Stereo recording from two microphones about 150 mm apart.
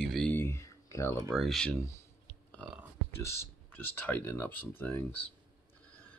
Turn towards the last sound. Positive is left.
turn(degrees=15)  # may be behind; listen again after turning